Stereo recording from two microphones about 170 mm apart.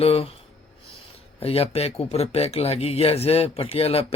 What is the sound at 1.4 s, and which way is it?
Speech, 35° left (ahead or behind).